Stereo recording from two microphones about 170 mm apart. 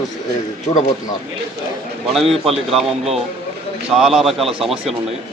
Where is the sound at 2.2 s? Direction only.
Centre (ahead or behind).